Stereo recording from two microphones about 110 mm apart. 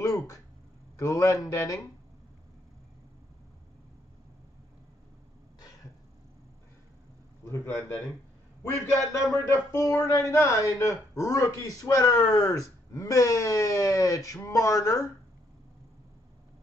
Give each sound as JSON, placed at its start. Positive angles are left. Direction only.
{"t": 0.0, "sound": "a sound", "side_deg": 35}
{"t": 0.9, "sound": "speech", "side_deg": 30}
{"t": 7.4, "sound": "speech", "side_deg": 20}
{"t": 9.1, "sound": "speech", "side_deg": 25}